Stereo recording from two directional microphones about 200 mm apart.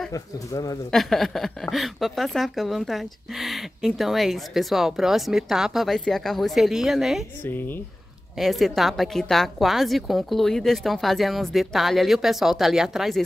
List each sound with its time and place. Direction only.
0.1 s speech: 15° left (ahead or behind)
0.9 s a woman's voice: centre (ahead or behind)
7.4 s a woman's voice: 10° left (ahead or behind)